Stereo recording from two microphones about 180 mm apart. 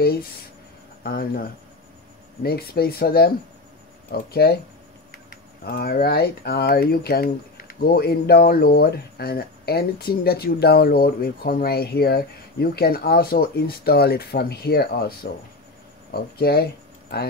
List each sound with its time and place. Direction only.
1.0 s speech: 55° left (ahead or behind)